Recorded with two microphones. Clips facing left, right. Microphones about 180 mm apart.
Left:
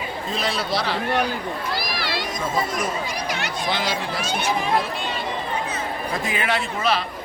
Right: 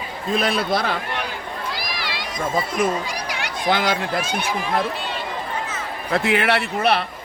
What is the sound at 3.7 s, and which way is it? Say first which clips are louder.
Speech: right 6 dB; 50° right (ahead or behind).